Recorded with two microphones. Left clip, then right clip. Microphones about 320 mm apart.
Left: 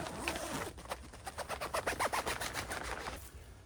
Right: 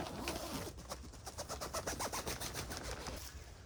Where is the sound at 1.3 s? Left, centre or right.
Centre.